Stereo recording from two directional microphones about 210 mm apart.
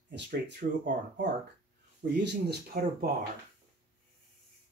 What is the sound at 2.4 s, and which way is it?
Speech, 45° right (ahead or behind).